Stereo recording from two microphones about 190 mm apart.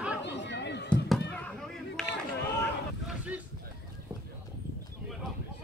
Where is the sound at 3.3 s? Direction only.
10° right (ahead or behind).